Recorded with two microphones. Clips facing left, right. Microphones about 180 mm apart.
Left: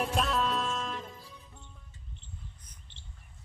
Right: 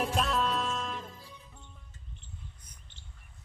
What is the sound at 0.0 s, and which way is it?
Music, centre (ahead or behind).